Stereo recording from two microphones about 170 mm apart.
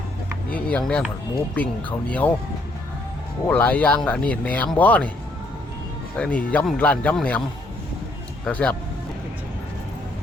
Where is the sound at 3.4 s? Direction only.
10° left (ahead or behind).